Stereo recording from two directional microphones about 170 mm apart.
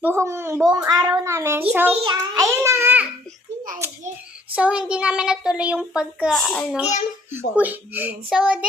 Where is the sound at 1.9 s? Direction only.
30° right (ahead or behind).